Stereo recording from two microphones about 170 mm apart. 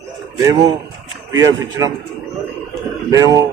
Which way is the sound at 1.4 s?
20° right (ahead or behind).